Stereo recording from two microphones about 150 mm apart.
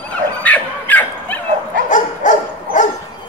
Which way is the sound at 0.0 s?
10° left (ahead or behind).